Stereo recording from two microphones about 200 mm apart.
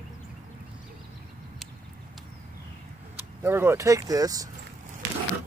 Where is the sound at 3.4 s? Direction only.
10° right (ahead or behind).